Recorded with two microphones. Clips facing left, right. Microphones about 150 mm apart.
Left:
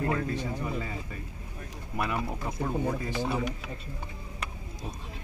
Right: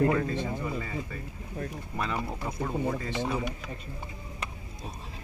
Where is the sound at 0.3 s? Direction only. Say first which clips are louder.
Right 1 dB; 15° left (ahead or behind).